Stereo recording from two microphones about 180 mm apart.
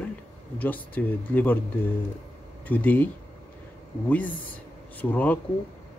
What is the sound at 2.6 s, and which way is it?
Speech, 10° left (ahead or behind).